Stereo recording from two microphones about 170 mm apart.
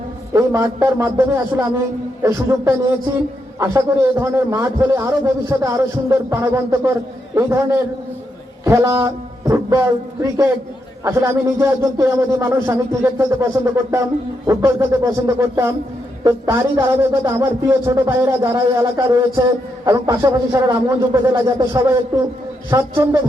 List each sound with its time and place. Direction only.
0.3 s a man's voice: 15° right (ahead or behind)
11.0 s a man's voice: 15° right (ahead or behind)